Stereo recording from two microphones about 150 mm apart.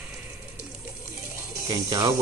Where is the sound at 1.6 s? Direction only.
25° right (ahead or behind).